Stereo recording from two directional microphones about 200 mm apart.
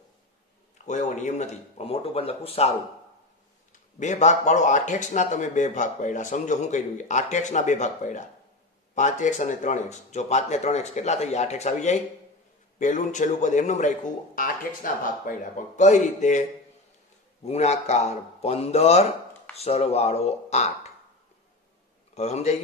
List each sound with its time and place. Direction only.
0.8 s a man's voice: 35° left (ahead or behind)
4.0 s a man's voice: 35° left (ahead or behind)
17.5 s a man's voice: 35° left (ahead or behind)
22.1 s a man's voice: 35° left (ahead or behind)